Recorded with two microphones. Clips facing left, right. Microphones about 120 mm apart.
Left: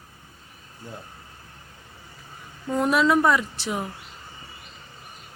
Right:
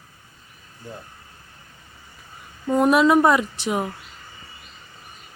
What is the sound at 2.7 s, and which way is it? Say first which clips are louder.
Speech: right 4 dB; 20° right (ahead or behind).